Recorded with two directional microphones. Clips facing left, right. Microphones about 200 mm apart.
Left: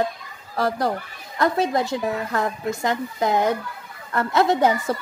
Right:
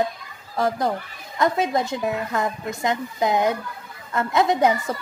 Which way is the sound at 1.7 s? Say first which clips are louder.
Even; centre (ahead or behind).